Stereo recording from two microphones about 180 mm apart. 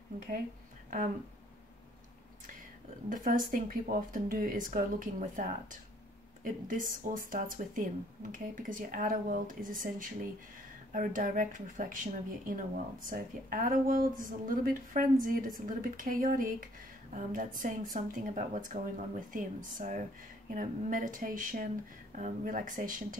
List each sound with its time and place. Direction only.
3.1 s speech: 50° right (ahead or behind)